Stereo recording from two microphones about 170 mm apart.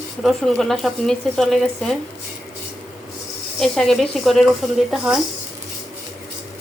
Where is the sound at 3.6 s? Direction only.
Centre (ahead or behind).